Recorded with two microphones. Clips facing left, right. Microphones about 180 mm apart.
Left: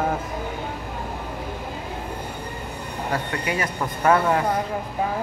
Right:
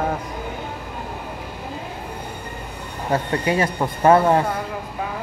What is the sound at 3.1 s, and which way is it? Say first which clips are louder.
Speech: right 6 dB; 30° right (ahead or behind).